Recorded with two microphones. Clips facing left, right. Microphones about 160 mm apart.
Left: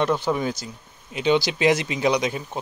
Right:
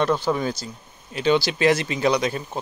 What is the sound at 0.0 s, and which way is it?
Speech, 15° left (ahead or behind).